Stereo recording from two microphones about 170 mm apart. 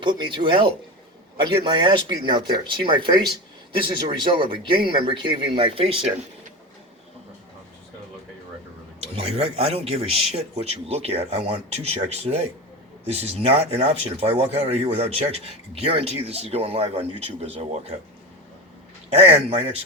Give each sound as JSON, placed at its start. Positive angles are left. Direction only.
{"t": 0.0, "sound": "speech", "side_deg": -25}
{"t": 4.7, "sound": "speech", "side_deg": -30}
{"t": 9.0, "sound": "speech", "side_deg": -35}
{"t": 19.1, "sound": "speech", "side_deg": -35}